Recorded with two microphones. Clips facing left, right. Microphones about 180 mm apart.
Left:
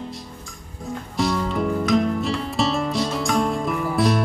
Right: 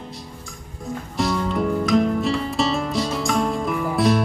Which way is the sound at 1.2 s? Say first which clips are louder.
Even; centre (ahead or behind).